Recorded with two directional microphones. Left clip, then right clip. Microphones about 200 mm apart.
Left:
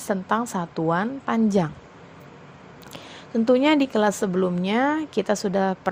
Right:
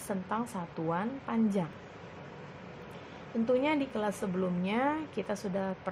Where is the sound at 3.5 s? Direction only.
45° left (ahead or behind).